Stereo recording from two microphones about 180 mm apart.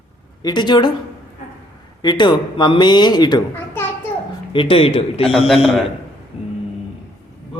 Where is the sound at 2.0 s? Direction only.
25° left (ahead or behind).